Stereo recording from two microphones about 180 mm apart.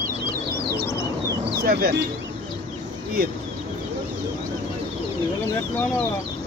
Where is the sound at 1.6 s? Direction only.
55° right (ahead or behind).